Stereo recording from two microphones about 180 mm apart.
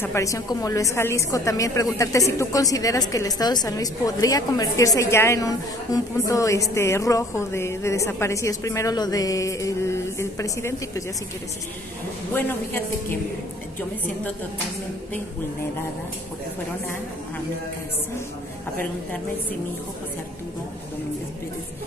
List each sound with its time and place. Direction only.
0.0 s a woman's voice: 15° left (ahead or behind)
12.4 s a woman's voice: 10° left (ahead or behind)